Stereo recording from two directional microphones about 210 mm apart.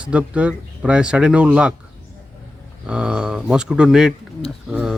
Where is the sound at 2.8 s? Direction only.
5° right (ahead or behind).